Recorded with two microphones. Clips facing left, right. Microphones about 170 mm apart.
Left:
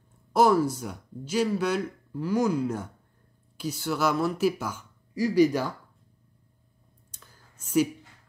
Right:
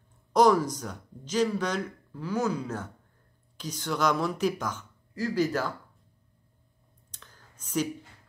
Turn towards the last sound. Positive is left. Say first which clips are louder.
# left 6 dB
turn(degrees=10)  # may be behind; listen again after turning